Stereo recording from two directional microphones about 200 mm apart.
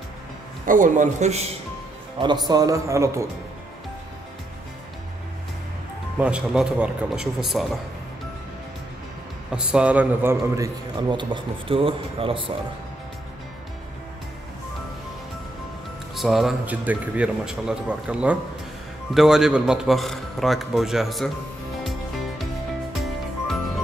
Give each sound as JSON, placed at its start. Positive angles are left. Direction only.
{"t": 0.7, "sound": "a man's voice", "side_deg": -40}
{"t": 2.1, "sound": "a man's voice", "side_deg": -20}
{"t": 6.1, "sound": "a man's voice", "side_deg": -5}
{"t": 9.5, "sound": "a man's voice", "side_deg": -5}
{"t": 16.2, "sound": "a man's voice", "side_deg": 0}
{"t": 23.0, "sound": "music", "side_deg": 0}